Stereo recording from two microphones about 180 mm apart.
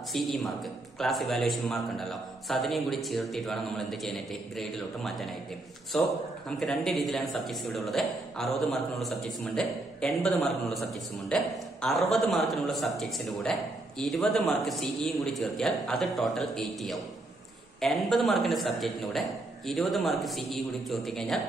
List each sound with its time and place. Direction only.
0.1 s a man's voice: centre (ahead or behind)